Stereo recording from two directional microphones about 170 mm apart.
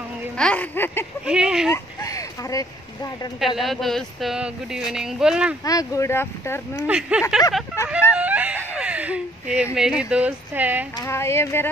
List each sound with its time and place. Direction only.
0.4 s speech: 5° left (ahead or behind)
1.2 s speech: 5° right (ahead or behind)
1.7 s speech: 20° left (ahead or behind)
3.3 s speech: centre (ahead or behind)
5.6 s speech: 20° left (ahead or behind)
6.9 s speech: 5° right (ahead or behind)
7.9 s a sound: 5° right (ahead or behind)
9.8 s speech: 5° right (ahead or behind)
11.0 s speech: 15° left (ahead or behind)